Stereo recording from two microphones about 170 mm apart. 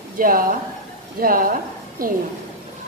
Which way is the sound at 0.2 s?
55° right (ahead or behind).